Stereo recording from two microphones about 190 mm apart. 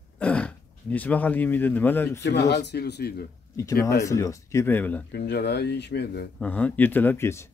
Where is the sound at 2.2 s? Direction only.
65° left (ahead or behind).